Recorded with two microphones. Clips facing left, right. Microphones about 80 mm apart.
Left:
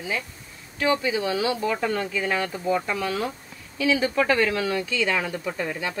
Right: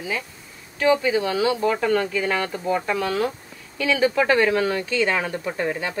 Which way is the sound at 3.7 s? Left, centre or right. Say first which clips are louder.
Right 2 dB; right.